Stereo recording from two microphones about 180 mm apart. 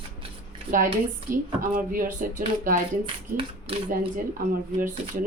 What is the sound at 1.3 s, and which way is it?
A woman's voice, 50° right (ahead or behind).